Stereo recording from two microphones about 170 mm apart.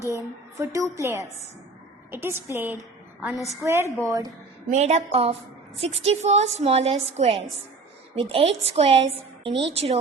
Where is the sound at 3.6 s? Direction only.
15° right (ahead or behind).